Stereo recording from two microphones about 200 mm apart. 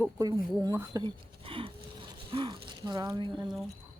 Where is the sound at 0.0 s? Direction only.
20° right (ahead or behind).